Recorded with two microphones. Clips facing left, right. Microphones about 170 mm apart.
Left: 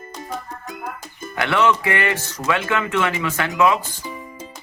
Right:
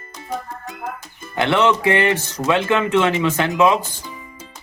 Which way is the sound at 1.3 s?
20° right (ahead or behind).